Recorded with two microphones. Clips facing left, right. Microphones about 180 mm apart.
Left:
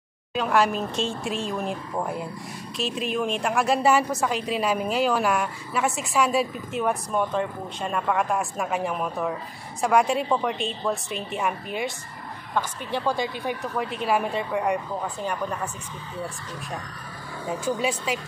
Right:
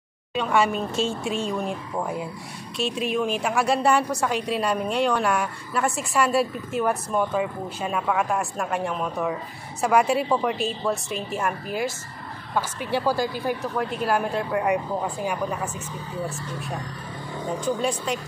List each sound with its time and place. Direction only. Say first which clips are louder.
0.3 s a woman's voice: even; centre (ahead or behind)
17.5 s a woman's voice: right 1 dB; 5° left (ahead or behind)